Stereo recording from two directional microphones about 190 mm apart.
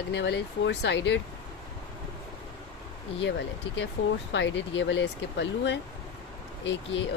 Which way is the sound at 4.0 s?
70° left (ahead or behind).